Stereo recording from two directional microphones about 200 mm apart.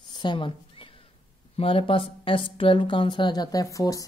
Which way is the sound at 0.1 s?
20° left (ahead or behind).